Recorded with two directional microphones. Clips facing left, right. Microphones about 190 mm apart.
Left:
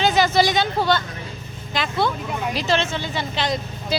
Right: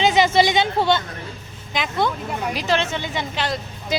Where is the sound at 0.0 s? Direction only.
20° right (ahead or behind).